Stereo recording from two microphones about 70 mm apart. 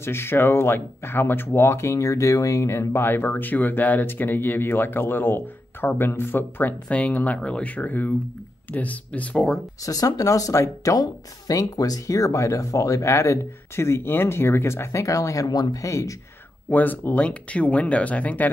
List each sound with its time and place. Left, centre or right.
0.0 s speech: left
6.9 s speech: centre
9.8 s speech: left
15.4 s speech: left
16.7 s speech: left